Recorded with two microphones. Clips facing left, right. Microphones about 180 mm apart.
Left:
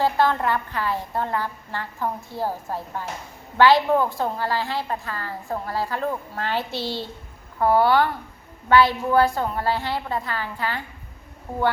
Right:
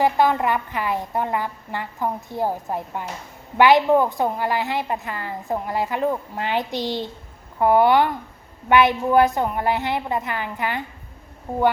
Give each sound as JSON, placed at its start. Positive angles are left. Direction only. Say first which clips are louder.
{"t": 0.0, "sound": "a woman's voice", "louder": "right 2 dB", "side_deg": -15}